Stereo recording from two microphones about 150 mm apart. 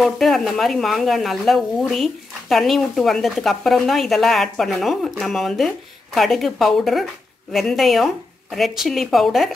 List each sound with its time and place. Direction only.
0.0 s a woman's voice: centre (ahead or behind)